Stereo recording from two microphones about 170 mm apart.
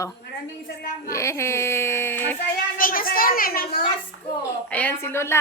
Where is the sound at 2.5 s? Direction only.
55° left (ahead or behind).